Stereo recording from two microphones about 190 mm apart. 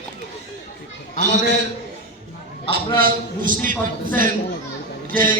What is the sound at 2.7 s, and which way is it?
A man's voice, 45° right (ahead or behind).